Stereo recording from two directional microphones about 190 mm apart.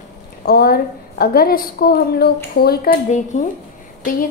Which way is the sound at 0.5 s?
55° left (ahead or behind).